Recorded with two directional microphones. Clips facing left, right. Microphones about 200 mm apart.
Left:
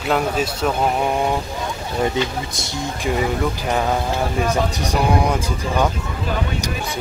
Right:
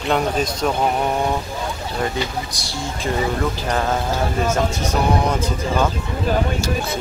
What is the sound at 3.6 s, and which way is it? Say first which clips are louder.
Speech: left 2 dB; 5° left (ahead or behind).